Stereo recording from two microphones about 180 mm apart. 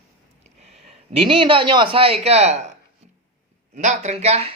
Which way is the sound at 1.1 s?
30° right (ahead or behind).